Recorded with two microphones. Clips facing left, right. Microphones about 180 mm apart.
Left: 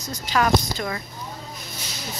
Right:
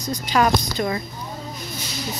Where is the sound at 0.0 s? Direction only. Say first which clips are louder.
Right 3 dB; 15° right (ahead or behind).